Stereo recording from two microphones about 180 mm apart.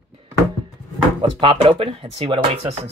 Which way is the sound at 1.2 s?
30° right (ahead or behind).